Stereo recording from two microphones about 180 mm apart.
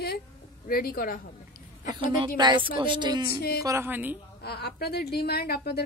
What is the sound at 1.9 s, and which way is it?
A woman's voice, 25° right (ahead or behind).